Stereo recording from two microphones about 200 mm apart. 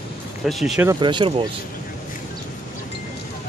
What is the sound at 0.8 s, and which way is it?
Speech, 25° right (ahead or behind).